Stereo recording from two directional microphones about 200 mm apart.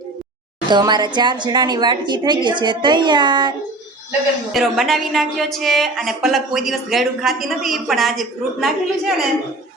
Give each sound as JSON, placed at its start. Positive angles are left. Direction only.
{"t": 0.7, "sound": "a woman's voice", "side_deg": -20}
{"t": 4.5, "sound": "a woman's voice", "side_deg": 0}